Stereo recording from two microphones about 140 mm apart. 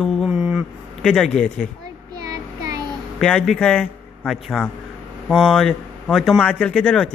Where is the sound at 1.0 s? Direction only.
5° left (ahead or behind).